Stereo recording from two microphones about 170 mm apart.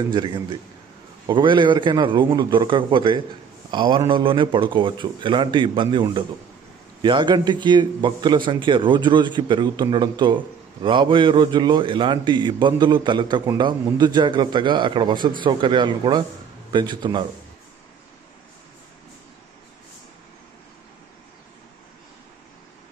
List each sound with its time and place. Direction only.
0.1 s a man's voice: 25° right (ahead or behind)